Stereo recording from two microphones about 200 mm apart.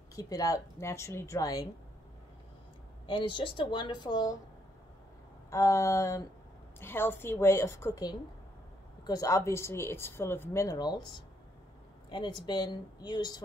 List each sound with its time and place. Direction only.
0.1 s speech: 15° left (ahead or behind)
3.1 s speech: 25° left (ahead or behind)
5.5 s speech: 15° left (ahead or behind)